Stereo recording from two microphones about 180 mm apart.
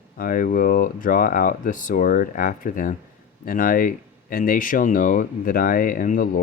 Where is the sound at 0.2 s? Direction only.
50° left (ahead or behind).